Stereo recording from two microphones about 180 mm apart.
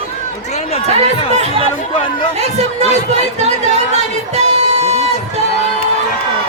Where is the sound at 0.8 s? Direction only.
35° right (ahead or behind).